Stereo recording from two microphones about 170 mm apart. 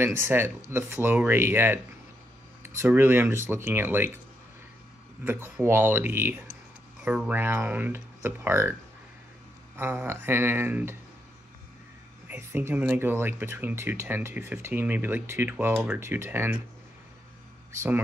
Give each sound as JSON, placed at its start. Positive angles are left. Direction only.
{"t": 0.0, "sound": "speech", "side_deg": -15}
{"t": 2.8, "sound": "speech", "side_deg": -15}
{"t": 5.2, "sound": "speech", "side_deg": -10}
{"t": 9.8, "sound": "speech", "side_deg": -15}
{"t": 12.3, "sound": "speech", "side_deg": -15}